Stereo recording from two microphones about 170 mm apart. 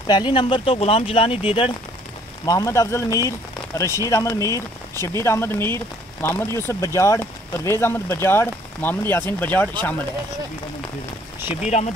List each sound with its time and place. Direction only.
0.0 s speech: 25° left (ahead or behind)
2.4 s speech: 20° left (ahead or behind)
11.6 s speech: 40° left (ahead or behind)